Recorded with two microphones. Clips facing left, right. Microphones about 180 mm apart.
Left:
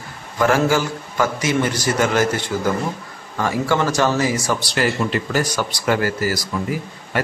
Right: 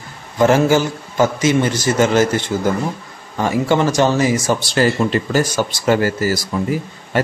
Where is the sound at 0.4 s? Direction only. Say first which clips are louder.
Right 4 dB; 20° right (ahead or behind).